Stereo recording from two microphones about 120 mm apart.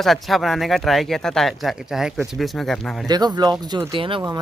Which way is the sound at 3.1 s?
35° right (ahead or behind).